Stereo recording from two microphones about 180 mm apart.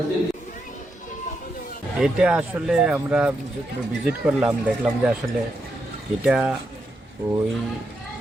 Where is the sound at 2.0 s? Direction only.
5° right (ahead or behind).